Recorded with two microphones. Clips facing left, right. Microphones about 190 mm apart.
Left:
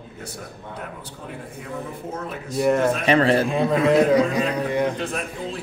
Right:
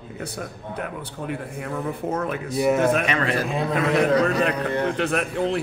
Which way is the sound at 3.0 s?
30° left (ahead or behind).